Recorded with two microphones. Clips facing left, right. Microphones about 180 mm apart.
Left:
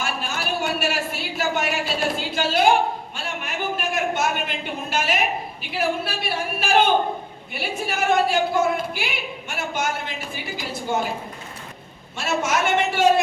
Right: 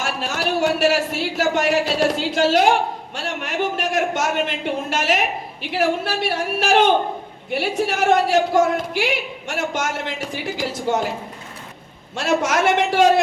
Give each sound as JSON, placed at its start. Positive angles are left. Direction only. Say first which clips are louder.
{"t": 0.0, "sound": "a man's voice", "louder": "right 4 dB", "side_deg": -90}
{"t": 3.2, "sound": "a sound", "louder": "right 9 dB", "side_deg": -90}
{"t": 5.7, "sound": "a man's voice", "louder": "right 4 dB", "side_deg": -90}
{"t": 12.1, "sound": "a man's voice", "louder": "right 4 dB", "side_deg": -90}